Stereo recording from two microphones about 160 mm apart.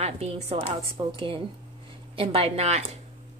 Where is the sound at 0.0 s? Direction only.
40° right (ahead or behind).